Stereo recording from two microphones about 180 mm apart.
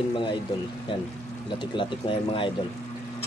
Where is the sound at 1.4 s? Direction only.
25° left (ahead or behind).